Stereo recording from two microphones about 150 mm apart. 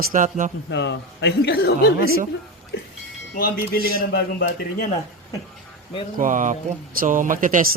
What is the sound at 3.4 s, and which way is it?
A man's voice, 85° left.